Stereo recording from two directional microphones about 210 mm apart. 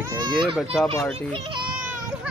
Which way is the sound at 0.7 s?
Centre (ahead or behind).